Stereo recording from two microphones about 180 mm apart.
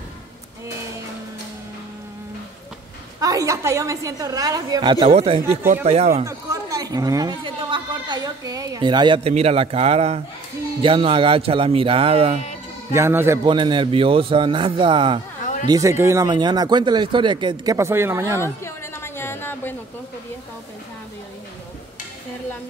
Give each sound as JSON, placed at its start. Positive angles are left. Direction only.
{"t": 3.2, "sound": "speech", "side_deg": -20}
{"t": 5.0, "sound": "speech", "side_deg": -30}
{"t": 6.2, "sound": "speech", "side_deg": -20}
{"t": 12.9, "sound": "a man's voice", "side_deg": -15}
{"t": 13.5, "sound": "speech", "side_deg": -25}
{"t": 18.4, "sound": "a sound", "side_deg": 15}